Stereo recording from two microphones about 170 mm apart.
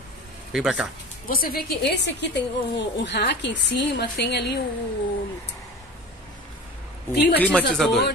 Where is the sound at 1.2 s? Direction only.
60° left (ahead or behind); by 4.6 s 75° left (ahead or behind).